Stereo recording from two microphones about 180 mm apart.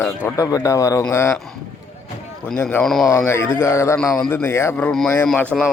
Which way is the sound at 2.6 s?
5° left (ahead or behind).